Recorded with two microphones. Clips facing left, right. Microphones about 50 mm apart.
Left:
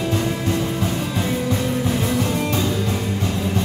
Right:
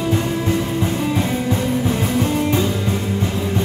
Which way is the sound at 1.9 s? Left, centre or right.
Right.